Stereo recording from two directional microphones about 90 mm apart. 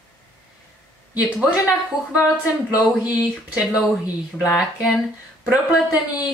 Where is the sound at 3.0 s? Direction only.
15° right (ahead or behind).